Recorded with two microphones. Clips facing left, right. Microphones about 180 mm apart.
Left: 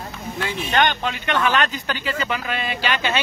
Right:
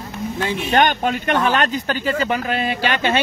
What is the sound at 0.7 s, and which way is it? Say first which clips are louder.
Speech: right 4 dB; 45° right (ahead or behind).